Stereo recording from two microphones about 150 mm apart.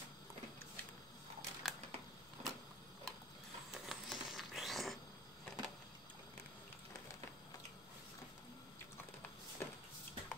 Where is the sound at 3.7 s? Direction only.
Centre (ahead or behind).